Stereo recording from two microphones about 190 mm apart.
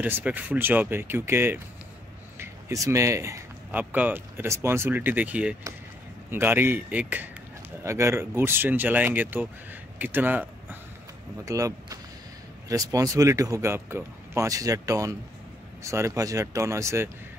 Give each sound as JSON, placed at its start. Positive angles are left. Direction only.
{"t": 0.0, "sound": "speech", "side_deg": -10}